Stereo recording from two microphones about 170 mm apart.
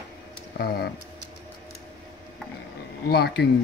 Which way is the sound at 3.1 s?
70° left (ahead or behind).